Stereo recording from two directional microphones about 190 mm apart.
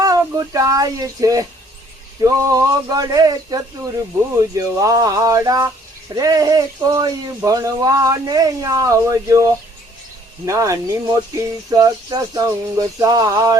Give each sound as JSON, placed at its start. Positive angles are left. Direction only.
{"t": 0.0, "sound": "speech", "side_deg": -20}